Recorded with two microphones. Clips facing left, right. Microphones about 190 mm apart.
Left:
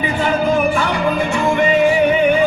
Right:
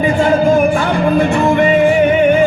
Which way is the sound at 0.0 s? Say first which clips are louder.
Right 6 dB; 45° right (ahead or behind).